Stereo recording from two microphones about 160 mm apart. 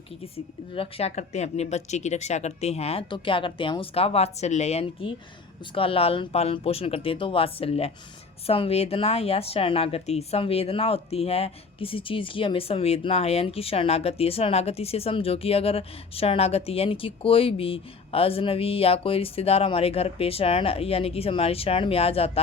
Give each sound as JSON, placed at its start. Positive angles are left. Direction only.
{"t": 0.2, "sound": "speech", "side_deg": 35}